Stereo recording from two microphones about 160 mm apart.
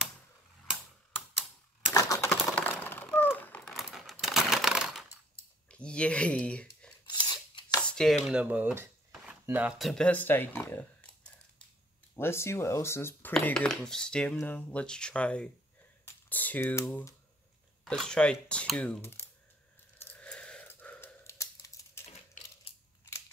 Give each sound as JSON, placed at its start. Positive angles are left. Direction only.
{"t": 2.0, "sound": "typewriter", "side_deg": 20}
{"t": 2.2, "sound": "typing", "side_deg": 10}
{"t": 2.8, "sound": "a sound", "side_deg": 15}
{"t": 3.7, "sound": "a sound", "side_deg": 0}
{"t": 5.7, "sound": "speech", "side_deg": 5}
{"t": 7.1, "sound": "scissors", "side_deg": 25}
{"t": 7.8, "sound": "dishes", "side_deg": 5}
{"t": 8.3, "sound": "speech", "side_deg": -5}
{"t": 17.8, "sound": "speech", "side_deg": 5}
{"t": 20.0, "sound": "computer keyboard", "side_deg": 10}
{"t": 22.0, "sound": "typing", "side_deg": 40}